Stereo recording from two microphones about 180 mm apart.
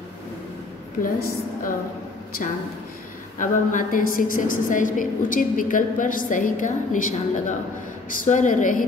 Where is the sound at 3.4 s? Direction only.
45° left (ahead or behind).